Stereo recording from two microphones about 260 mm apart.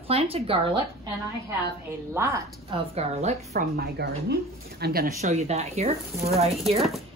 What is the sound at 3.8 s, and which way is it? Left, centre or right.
A woman's voice, right.